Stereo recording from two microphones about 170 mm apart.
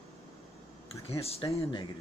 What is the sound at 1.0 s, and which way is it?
Speech, 35° left (ahead or behind).